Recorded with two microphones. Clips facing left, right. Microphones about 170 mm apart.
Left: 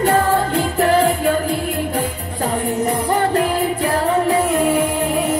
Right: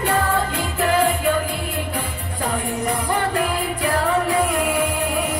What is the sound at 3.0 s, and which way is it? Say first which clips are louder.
Music: left 5 dB; 35° left (ahead or behind).